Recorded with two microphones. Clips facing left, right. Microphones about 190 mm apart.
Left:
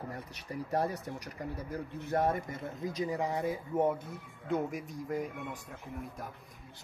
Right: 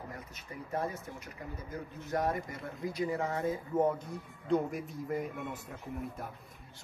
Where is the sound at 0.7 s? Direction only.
35° left (ahead or behind); by 3.8 s 15° left (ahead or behind).